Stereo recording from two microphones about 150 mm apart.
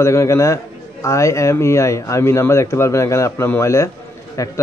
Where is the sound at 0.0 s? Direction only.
20° left (ahead or behind).